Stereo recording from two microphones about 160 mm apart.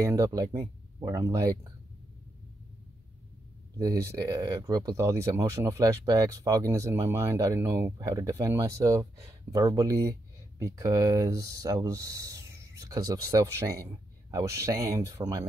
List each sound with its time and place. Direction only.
0.0 s speech: 20° right (ahead or behind)
3.8 s speech: 20° right (ahead or behind)